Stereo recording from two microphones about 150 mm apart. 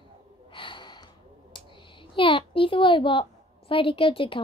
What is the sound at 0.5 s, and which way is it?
Gasp, 35° left (ahead or behind).